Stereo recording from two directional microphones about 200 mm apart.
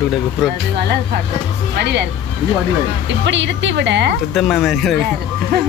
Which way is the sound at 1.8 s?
55° right (ahead or behind).